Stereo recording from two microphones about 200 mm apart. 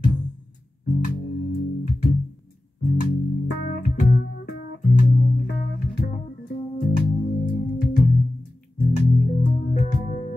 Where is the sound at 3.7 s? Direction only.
45° left (ahead or behind).